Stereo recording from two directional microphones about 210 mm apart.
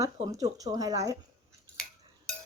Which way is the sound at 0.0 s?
15° right (ahead or behind).